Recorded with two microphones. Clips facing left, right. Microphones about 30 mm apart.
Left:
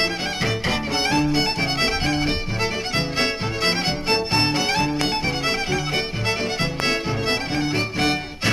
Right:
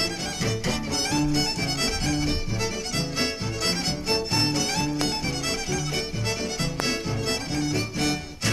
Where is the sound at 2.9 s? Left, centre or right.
Left.